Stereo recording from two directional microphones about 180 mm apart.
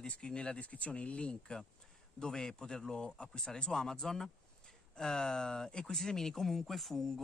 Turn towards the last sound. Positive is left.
turn(degrees=0)  # may be behind; listen again after turning